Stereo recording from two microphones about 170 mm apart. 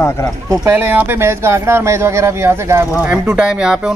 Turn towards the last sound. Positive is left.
turn(degrees=-5)  # may be behind; listen again after turning